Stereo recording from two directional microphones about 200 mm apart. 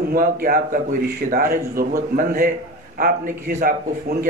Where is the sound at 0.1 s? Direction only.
45° right (ahead or behind).